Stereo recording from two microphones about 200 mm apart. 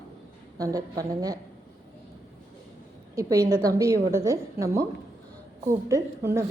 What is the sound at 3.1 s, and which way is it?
A woman's voice, 15° right (ahead or behind).